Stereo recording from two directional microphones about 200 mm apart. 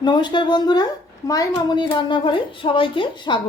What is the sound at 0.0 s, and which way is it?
A woman's voice, 20° left (ahead or behind).